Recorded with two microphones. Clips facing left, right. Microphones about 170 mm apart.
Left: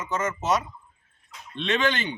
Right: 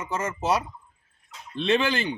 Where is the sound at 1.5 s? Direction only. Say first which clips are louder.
Right 2 dB; 35° right (ahead or behind).